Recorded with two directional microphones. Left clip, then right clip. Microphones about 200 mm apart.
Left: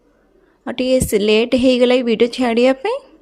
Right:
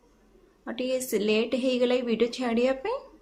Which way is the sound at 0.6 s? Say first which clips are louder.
Left 13 dB; 40° left (ahead or behind).